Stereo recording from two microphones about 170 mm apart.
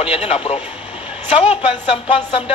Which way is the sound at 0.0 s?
35° left (ahead or behind).